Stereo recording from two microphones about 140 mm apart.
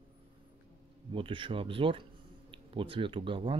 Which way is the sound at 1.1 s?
40° right (ahead or behind).